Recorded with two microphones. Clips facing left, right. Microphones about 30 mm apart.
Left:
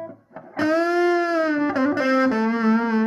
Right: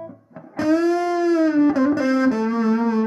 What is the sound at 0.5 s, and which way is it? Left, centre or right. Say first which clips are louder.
Music: right 1 dB; left.